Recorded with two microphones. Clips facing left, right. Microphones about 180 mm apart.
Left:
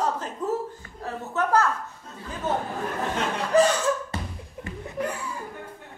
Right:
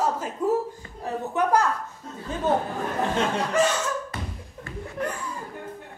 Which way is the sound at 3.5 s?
35° left (ahead or behind).